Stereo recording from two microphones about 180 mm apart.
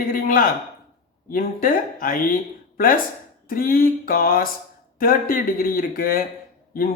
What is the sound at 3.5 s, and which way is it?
Speech, 50° left (ahead or behind).